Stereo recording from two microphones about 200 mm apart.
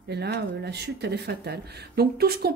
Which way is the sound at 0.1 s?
55° right (ahead or behind).